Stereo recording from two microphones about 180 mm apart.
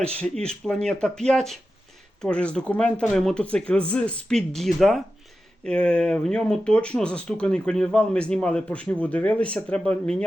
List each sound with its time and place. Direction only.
0.2 s speech: 5° left (ahead or behind)